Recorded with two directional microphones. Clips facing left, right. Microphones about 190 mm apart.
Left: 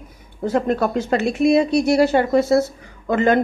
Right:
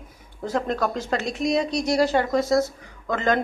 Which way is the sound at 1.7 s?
60° left (ahead or behind).